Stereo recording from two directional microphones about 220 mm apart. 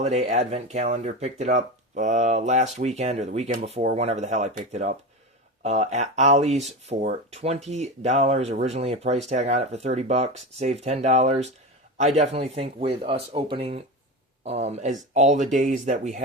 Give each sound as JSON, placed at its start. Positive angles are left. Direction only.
{"t": 0.0, "sound": "speech", "side_deg": -30}